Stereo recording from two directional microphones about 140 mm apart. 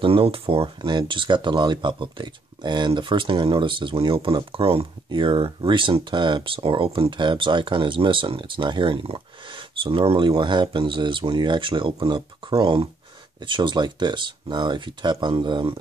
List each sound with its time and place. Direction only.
0.0 s speech: 40° right (ahead or behind)